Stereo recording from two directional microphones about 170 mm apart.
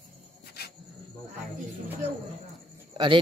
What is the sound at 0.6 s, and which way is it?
Insect, 70° left (ahead or behind).